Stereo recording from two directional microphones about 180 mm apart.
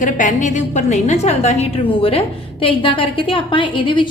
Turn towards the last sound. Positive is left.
turn(degrees=25)  # may be behind; listen again after turning